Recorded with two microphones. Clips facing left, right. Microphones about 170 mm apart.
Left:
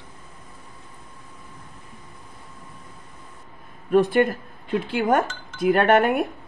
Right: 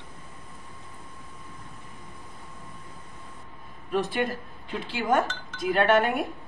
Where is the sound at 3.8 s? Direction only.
50° left (ahead or behind).